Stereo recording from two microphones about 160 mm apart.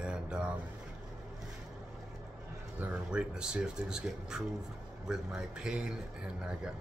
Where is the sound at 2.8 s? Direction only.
5° right (ahead or behind).